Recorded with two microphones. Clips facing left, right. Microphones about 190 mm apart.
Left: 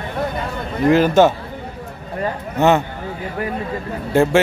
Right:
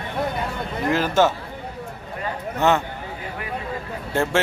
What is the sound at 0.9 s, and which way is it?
Speech, 15° left (ahead or behind).